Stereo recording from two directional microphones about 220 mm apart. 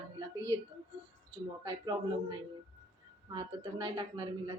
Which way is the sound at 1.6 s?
20° right (ahead or behind).